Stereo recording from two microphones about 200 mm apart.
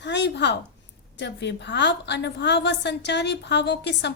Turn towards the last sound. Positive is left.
turn(degrees=60)  # may be behind; listen again after turning